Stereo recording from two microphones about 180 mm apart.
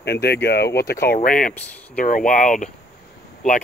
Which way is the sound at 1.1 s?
50° left (ahead or behind).